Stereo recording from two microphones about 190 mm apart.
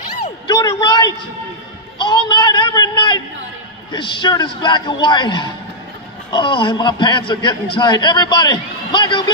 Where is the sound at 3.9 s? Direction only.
25° left (ahead or behind).